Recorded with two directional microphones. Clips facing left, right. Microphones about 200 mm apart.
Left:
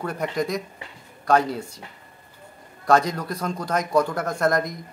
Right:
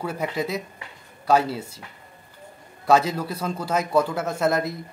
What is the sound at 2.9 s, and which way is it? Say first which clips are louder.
A man's voice: even; 5° right (ahead or behind).